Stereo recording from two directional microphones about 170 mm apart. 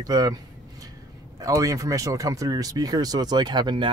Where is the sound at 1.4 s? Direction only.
20° right (ahead or behind).